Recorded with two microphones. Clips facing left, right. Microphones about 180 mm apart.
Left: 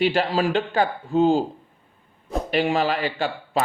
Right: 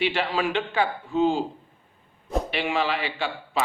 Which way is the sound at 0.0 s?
40° left (ahead or behind).